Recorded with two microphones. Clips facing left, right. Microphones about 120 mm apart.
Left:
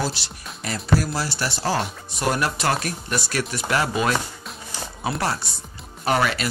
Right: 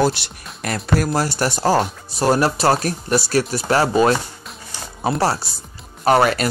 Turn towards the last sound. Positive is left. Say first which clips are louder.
# right 6 dB
turn(degrees=-45)  # may be behind; listen again after turning